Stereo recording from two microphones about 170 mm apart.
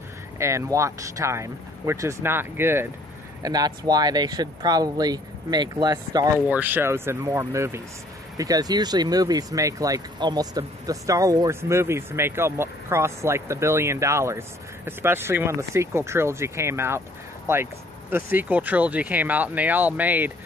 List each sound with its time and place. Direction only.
0.4 s speech: 15° right (ahead or behind)
6.4 s speech: 10° right (ahead or behind)